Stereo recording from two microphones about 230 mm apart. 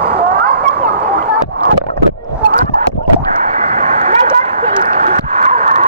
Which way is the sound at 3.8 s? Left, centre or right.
Right.